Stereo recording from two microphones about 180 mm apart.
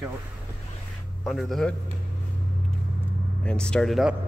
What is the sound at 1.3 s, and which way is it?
Speech, centre (ahead or behind).